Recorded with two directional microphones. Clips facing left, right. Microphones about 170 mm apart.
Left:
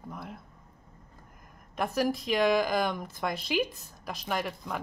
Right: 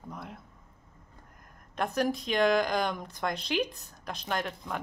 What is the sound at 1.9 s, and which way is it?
Speech, centre (ahead or behind).